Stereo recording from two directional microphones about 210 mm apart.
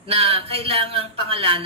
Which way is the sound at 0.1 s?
25° right (ahead or behind).